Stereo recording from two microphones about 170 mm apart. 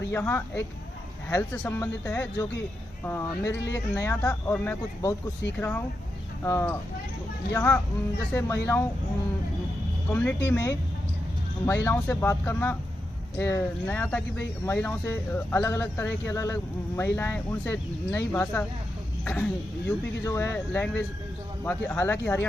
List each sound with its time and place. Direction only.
0.1 s speech: 15° left (ahead or behind)
10.1 s speech: 10° left (ahead or behind)